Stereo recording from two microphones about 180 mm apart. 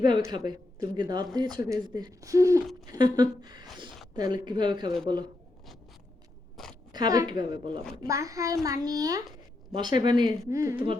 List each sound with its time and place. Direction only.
0.0 s a woman's voice: 25° right (ahead or behind)
6.6 s a sound: centre (ahead or behind)
6.9 s a woman's voice: 20° right (ahead or behind)